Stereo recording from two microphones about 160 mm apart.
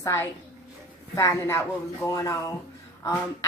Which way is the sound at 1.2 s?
15° left (ahead or behind).